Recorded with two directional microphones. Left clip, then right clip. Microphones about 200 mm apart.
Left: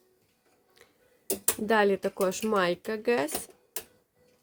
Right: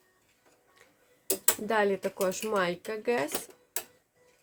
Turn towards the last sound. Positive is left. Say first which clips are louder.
# left 2 dB
turn(degrees=45)  # may be behind; listen again after turning